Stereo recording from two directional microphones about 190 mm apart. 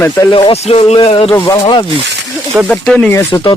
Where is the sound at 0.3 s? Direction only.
25° left (ahead or behind).